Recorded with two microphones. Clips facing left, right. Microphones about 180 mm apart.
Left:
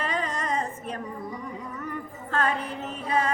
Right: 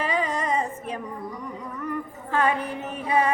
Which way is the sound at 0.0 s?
10° right (ahead or behind).